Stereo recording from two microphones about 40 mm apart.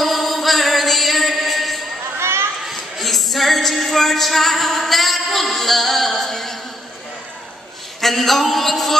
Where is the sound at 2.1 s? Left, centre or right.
Right.